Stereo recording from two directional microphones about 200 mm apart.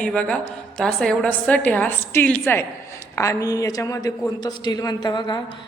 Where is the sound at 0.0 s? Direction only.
5° left (ahead or behind).